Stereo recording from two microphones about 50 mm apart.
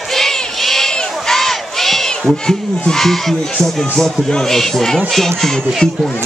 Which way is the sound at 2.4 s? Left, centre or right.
Centre.